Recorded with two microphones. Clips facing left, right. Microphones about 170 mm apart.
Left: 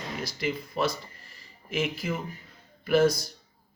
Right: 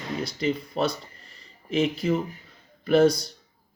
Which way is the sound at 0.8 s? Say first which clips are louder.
Right 2 dB; 30° right (ahead or behind).